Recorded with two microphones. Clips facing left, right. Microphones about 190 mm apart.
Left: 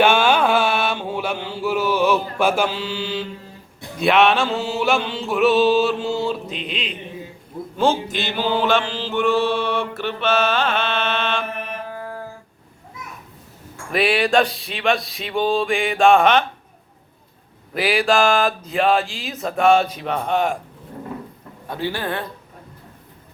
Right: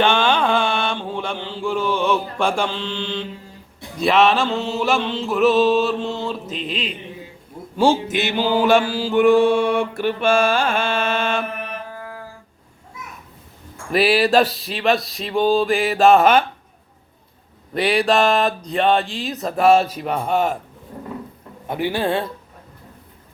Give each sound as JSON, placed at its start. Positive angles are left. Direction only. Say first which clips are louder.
{"t": 0.0, "sound": "mantra", "louder": "left 2 dB", "side_deg": 10}
{"t": 3.9, "sound": "music", "louder": "even", "side_deg": 0}
{"t": 8.4, "sound": "mantra", "louder": "right 3 dB", "side_deg": -10}
{"t": 13.9, "sound": "music", "louder": "right 2 dB", "side_deg": 0}
{"t": 17.7, "sound": "music", "louder": "right 1 dB", "side_deg": 0}
{"t": 21.7, "sound": "a man's voice", "louder": "right 4 dB", "side_deg": -20}